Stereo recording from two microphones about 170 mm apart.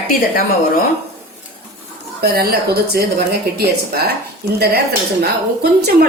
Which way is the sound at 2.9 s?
70° right (ahead or behind).